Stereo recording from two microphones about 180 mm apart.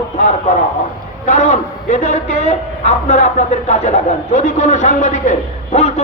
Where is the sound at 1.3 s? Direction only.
40° left (ahead or behind).